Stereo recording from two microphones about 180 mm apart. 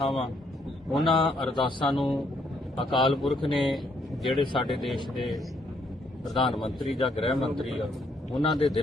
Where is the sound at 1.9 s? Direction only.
Centre (ahead or behind).